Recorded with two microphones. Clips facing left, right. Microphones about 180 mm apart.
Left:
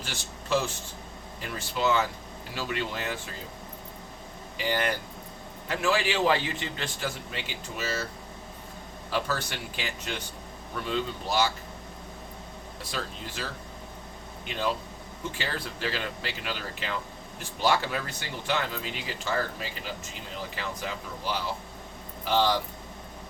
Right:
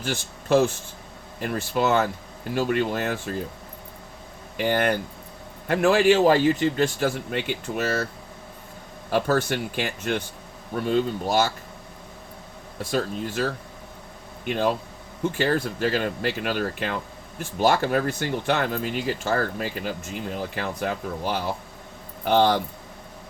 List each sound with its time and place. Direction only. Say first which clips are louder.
0.0 s speech: right 9 dB; 50° right (ahead or behind)
4.5 s speech: right 6 dB; 55° right (ahead or behind)
9.0 s speech: right 8 dB; 50° right (ahead or behind)
12.8 s speech: right 11 dB; 50° right (ahead or behind)